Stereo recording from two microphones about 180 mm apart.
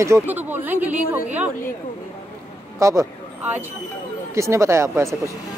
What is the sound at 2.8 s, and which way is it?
Speech, 15° right (ahead or behind).